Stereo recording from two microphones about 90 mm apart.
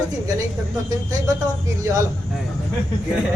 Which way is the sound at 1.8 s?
35° right (ahead or behind).